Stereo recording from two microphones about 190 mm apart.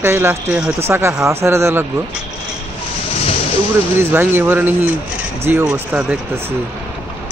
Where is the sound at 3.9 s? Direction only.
15° right (ahead or behind).